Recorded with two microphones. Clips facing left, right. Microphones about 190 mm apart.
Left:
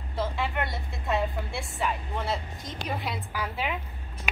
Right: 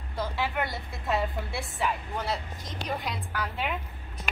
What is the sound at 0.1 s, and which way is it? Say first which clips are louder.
A woman's voice: left 1 dB; centre (ahead or behind).